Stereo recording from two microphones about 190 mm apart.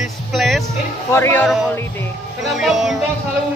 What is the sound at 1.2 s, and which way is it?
Speech, 15° left (ahead or behind).